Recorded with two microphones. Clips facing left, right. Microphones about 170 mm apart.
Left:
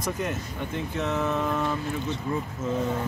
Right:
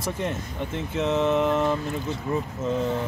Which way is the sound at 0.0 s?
30° right (ahead or behind).